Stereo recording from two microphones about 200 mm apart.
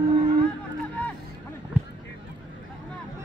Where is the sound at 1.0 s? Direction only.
5° left (ahead or behind).